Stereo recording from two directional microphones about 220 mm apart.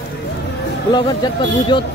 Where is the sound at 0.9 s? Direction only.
20° left (ahead or behind).